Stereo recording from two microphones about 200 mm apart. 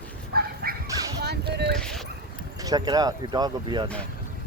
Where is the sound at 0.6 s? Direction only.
50° right (ahead or behind).